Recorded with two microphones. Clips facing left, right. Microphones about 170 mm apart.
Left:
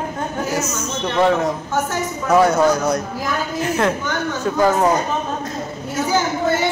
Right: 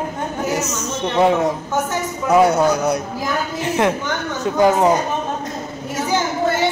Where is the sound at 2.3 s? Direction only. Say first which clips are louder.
Even; 15° right (ahead or behind).